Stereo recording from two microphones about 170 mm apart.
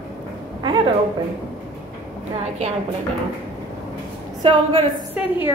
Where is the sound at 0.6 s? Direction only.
30° right (ahead or behind).